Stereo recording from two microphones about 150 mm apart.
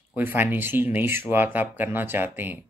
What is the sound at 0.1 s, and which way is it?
Speech, 15° right (ahead or behind).